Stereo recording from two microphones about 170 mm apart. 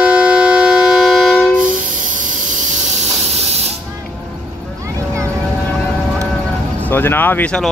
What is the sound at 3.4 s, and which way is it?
Hiss, 40° right (ahead or behind).